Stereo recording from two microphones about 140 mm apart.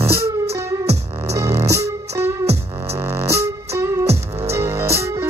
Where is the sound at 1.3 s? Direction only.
20° right (ahead or behind).